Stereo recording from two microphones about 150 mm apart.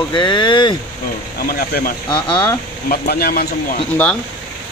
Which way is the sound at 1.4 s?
75° left (ahead or behind).